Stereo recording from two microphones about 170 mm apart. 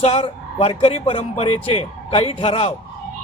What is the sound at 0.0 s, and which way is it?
A man's voice, 35° left (ahead or behind).